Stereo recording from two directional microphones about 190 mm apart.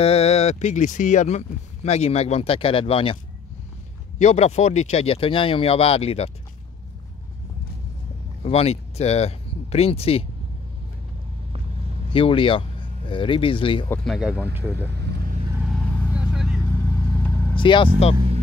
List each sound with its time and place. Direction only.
0.0 s speech: 35° left (ahead or behind)
4.2 s speech: 35° left (ahead or behind)
8.5 s speech: 30° left (ahead or behind)
12.1 s speech: 30° left (ahead or behind)
14.0 s speech: centre (ahead or behind)
15.0 s vehicle: 60° right (ahead or behind)
15.6 s vehicle: 5° right (ahead or behind)
17.6 s speech: 25° left (ahead or behind)